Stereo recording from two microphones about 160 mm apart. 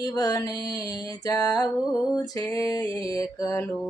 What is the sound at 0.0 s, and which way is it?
Music, 25° left (ahead or behind).